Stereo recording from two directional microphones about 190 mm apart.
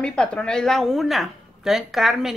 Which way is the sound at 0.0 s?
5° left (ahead or behind).